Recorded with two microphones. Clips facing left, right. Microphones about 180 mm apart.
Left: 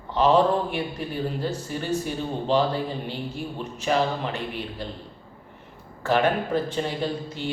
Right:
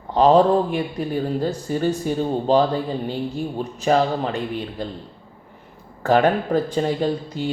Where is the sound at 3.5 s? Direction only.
40° right (ahead or behind).